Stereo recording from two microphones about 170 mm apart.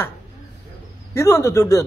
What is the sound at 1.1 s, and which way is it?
Speech, 15° left (ahead or behind).